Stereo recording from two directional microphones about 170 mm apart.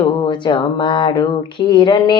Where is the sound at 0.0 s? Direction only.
25° left (ahead or behind).